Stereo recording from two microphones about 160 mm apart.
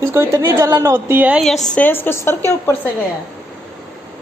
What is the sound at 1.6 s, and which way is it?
A woman's voice, 10° left (ahead or behind).